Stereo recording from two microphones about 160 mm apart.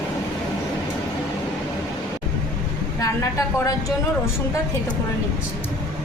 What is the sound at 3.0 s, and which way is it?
Speech, 20° left (ahead or behind).